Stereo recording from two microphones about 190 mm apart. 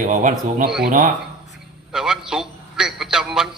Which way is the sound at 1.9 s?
5° right (ahead or behind).